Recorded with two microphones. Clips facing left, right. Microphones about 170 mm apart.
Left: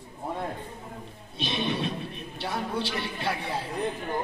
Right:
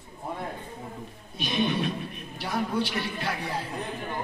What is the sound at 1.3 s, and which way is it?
A man's voice, 30° left (ahead or behind).